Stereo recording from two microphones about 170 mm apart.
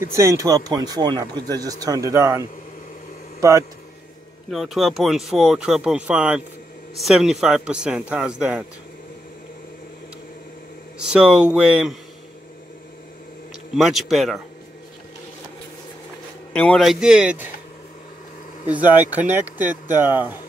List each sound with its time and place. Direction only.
0.1 s speech: 15° right (ahead or behind)
4.5 s speech: centre (ahead or behind)
11.0 s speech: 5° right (ahead or behind)
13.7 s speech: centre (ahead or behind)
16.5 s speech: 5° left (ahead or behind)
18.7 s speech: 10° right (ahead or behind)